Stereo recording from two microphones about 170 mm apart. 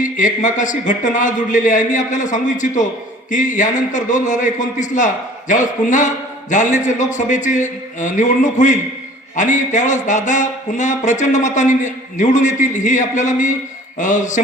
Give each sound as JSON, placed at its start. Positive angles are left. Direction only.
{"t": 0.0, "sound": "speech", "side_deg": 50}